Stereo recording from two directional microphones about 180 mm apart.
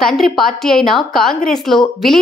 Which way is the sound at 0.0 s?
Centre (ahead or behind).